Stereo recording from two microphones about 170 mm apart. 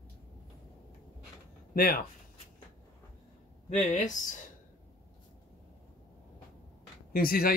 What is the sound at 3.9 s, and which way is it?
Speech, 50° left (ahead or behind).